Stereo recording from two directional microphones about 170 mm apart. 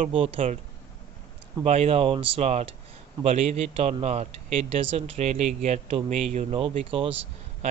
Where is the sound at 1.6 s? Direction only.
35° right (ahead or behind).